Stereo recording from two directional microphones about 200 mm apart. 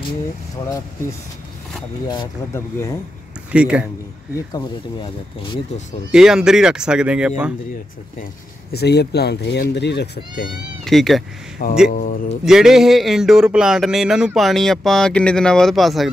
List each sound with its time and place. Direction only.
2.0 s speech: 15° left (ahead or behind)
3.5 s speech: 5° right (ahead or behind)
4.5 s speech: 25° left (ahead or behind)
6.1 s speech: 5° right (ahead or behind)
8.7 s speech: 55° left (ahead or behind)
10.8 s speech: centre (ahead or behind)
11.9 s speech: 40° left (ahead or behind)
12.4 s speech: centre (ahead or behind)